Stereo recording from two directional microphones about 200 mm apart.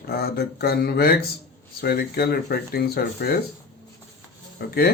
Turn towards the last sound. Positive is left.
turn(degrees=50)  # may be behind; listen again after turning